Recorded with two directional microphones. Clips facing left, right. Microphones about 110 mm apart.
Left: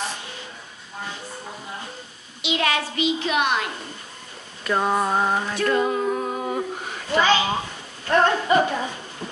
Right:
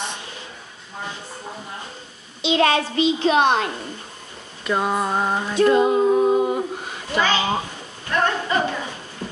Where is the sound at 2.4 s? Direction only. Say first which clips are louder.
Right 5 dB; 30° right (ahead or behind).